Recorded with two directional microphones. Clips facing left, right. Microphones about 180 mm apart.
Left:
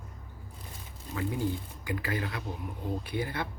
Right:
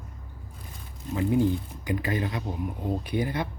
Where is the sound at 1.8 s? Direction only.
20° right (ahead or behind).